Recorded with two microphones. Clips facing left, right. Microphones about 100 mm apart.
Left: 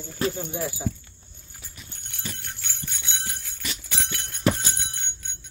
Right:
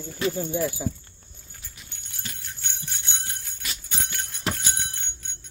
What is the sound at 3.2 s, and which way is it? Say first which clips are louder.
Jingle bell: left 2 dB; 90° left.